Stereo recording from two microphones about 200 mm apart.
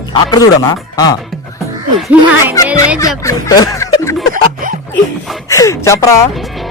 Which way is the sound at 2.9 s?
15° left (ahead or behind).